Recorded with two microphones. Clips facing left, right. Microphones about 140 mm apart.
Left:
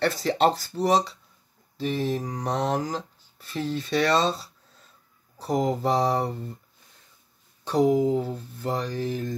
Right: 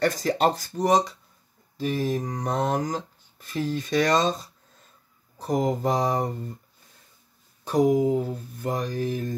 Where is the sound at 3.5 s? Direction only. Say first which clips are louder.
Right 1 dB; 10° right (ahead or behind).